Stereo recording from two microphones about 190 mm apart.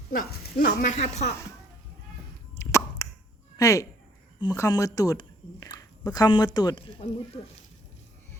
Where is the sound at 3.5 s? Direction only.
15° left (ahead or behind).